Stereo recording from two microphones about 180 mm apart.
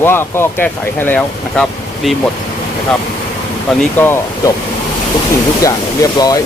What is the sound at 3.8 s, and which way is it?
Speech, 10° left (ahead or behind).